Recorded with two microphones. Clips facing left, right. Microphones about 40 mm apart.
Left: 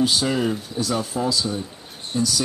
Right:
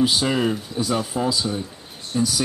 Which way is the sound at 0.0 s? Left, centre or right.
Centre.